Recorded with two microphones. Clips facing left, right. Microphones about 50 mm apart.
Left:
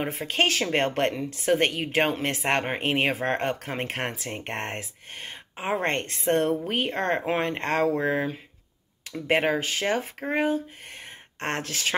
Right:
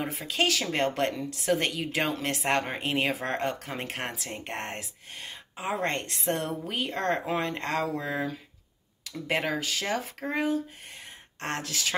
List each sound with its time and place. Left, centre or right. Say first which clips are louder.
0.0 s a woman's voice: left 3 dB; left